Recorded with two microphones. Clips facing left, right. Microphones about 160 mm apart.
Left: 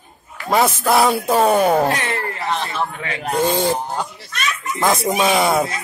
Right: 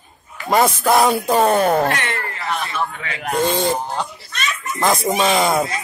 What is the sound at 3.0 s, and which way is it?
Speech, 30° left (ahead or behind).